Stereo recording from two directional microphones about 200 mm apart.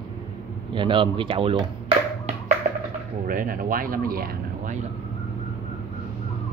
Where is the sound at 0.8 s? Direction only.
25° right (ahead or behind).